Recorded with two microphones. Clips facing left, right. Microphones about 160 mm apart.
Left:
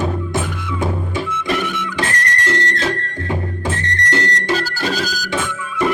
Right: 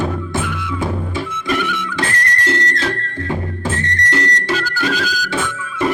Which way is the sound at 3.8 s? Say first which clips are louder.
Even; 30° left (ahead or behind).